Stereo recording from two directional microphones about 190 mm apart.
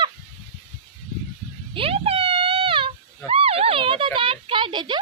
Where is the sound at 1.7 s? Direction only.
30° right (ahead or behind).